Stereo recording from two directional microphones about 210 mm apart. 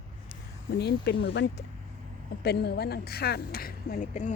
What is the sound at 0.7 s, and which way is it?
Speech, 50° left (ahead or behind).